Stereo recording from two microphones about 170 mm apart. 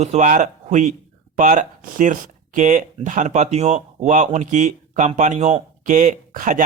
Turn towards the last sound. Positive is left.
turn(degrees=-50)  # may be behind; listen again after turning